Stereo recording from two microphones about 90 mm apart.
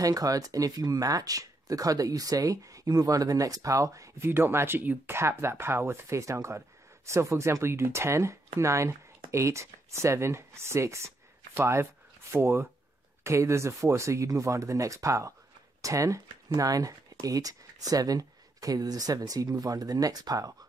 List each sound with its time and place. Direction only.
0.0 s speech: 40° right (ahead or behind)
4.3 s speech: 25° right (ahead or behind); by 20.5 s 45° right (ahead or behind)